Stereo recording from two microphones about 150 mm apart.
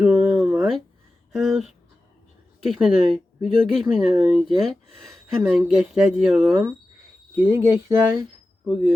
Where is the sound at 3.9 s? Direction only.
35° right (ahead or behind).